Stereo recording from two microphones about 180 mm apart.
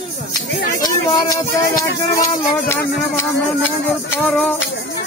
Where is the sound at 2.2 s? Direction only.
15° left (ahead or behind).